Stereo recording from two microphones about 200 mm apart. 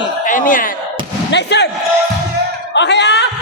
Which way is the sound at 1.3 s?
60° left (ahead or behind).